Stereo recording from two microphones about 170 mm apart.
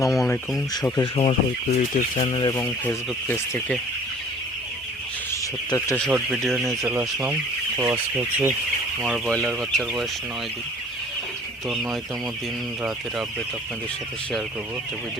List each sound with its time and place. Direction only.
0.1 s a sound: centre (ahead or behind)
0.5 s speech: 20° left (ahead or behind)
1.2 s speech: 35° left (ahead or behind); by 3.8 s 15° left (ahead or behind)
5.3 s speech: 15° left (ahead or behind)
6.1 s speech: 5° right (ahead or behind)
11.7 s speech: centre (ahead or behind)